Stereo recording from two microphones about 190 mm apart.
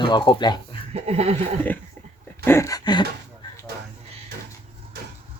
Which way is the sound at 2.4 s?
15° left (ahead or behind).